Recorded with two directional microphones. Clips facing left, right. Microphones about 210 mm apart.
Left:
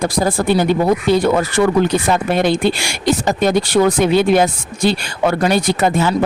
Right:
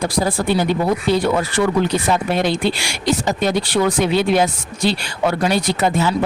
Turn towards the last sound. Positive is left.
turn(degrees=50)  # may be behind; listen again after turning